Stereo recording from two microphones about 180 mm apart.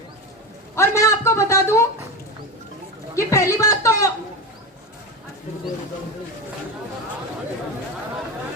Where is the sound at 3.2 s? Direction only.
15° left (ahead or behind).